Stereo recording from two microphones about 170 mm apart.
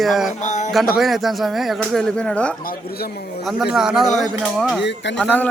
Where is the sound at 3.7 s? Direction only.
5° right (ahead or behind).